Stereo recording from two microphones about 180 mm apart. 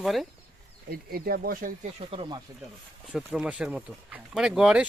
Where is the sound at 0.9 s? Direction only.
60° right (ahead or behind).